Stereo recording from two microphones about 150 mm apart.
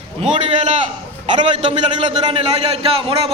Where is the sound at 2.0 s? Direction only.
40° right (ahead or behind).